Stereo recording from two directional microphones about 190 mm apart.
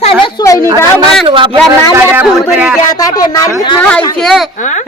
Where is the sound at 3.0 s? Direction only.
20° left (ahead or behind).